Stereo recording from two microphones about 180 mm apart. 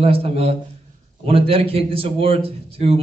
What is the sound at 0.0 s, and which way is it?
A man's voice, 35° right (ahead or behind).